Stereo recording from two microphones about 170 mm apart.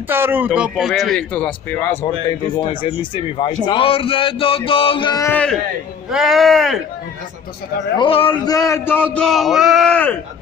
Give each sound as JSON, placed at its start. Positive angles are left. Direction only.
{"t": 0.1, "sound": "speech", "side_deg": -10}
{"t": 2.5, "sound": "a man's voice", "side_deg": 30}
{"t": 5.2, "sound": "speech", "side_deg": 10}
{"t": 6.0, "sound": "speech", "side_deg": 0}
{"t": 8.0, "sound": "a man's voice", "side_deg": 30}
{"t": 8.5, "sound": "speech", "side_deg": 20}